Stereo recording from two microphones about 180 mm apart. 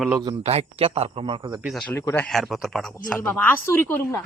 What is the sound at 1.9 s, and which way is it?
Speech, 15° left (ahead or behind).